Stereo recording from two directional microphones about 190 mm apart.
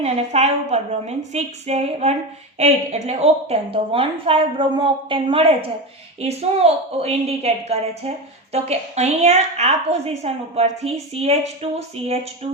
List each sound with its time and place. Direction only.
0.0 s a woman's voice: 35° right (ahead or behind)